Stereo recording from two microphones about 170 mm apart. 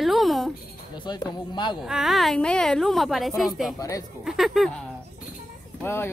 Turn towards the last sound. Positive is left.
turn(degrees=15)  # may be behind; listen again after turning